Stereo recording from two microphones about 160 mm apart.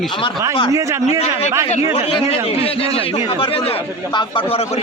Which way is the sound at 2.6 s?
35° left (ahead or behind).